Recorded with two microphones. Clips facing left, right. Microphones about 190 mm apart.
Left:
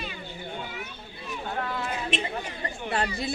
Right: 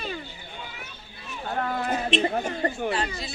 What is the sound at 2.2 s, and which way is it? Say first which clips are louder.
Speech: right 8 dB; 45° right (ahead or behind).